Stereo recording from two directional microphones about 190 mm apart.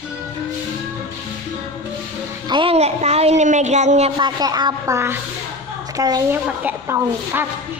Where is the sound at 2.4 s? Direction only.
25° right (ahead or behind).